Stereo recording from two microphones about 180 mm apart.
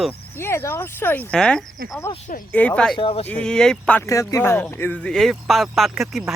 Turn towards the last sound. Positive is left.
turn(degrees=0)  # may be behind; listen again after turning